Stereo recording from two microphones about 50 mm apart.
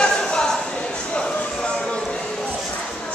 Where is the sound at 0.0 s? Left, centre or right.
Centre.